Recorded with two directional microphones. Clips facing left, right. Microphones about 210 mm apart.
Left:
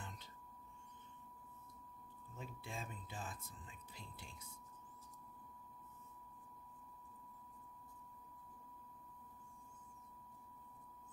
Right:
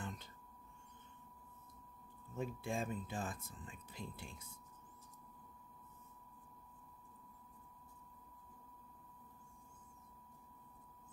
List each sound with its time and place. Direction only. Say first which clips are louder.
2.3 s speech: right 9 dB; 50° right (ahead or behind)